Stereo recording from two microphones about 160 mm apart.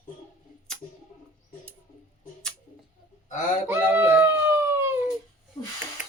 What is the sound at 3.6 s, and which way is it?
Baby cry, 15° right (ahead or behind).